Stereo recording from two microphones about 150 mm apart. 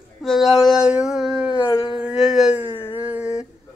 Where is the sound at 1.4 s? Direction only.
30° left (ahead or behind).